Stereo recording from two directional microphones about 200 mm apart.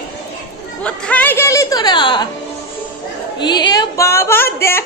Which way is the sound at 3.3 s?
20° left (ahead or behind).